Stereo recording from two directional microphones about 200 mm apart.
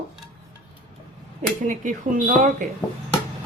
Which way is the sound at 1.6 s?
40° right (ahead or behind).